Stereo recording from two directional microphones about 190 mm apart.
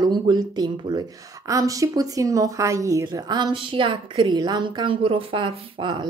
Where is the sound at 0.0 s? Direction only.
20° right (ahead or behind).